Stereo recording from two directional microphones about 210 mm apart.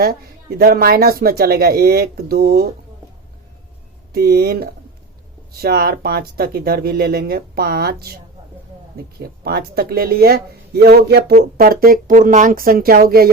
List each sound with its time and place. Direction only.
0.6 s speech: 45° right (ahead or behind)
4.1 s speech: 50° right (ahead or behind)
9.4 s speech: 50° right (ahead or behind)